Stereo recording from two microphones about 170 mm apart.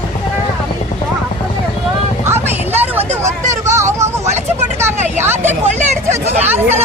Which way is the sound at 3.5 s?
15° right (ahead or behind).